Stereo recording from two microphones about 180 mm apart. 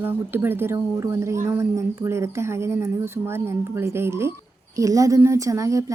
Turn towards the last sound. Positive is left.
turn(degrees=-15)  # may be behind; listen again after turning